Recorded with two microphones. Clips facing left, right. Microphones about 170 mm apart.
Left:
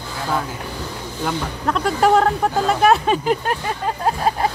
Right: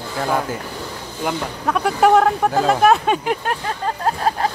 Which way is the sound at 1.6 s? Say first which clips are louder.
Right 2 dB; 5° right (ahead or behind).